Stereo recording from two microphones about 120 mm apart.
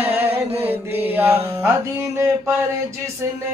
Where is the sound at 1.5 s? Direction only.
20° right (ahead or behind).